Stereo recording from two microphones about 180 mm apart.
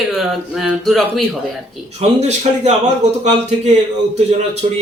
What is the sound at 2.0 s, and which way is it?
Speech, 35° right (ahead or behind).